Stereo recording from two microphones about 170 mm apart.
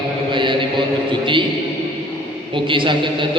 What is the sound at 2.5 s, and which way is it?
Speech, 30° right (ahead or behind).